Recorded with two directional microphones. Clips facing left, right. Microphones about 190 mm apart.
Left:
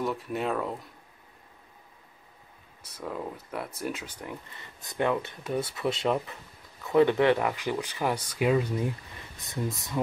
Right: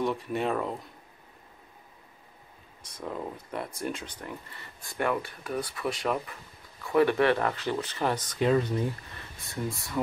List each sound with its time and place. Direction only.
0.0 s speech: centre (ahead or behind)
3.1 s speech: centre (ahead or behind); by 9.9 s 20° left (ahead or behind)